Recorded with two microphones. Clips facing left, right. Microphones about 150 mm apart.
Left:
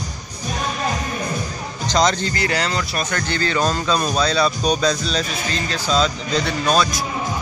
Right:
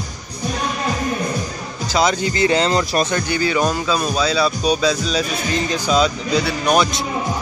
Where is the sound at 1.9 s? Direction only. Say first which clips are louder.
Right 1 dB; 5° right (ahead or behind).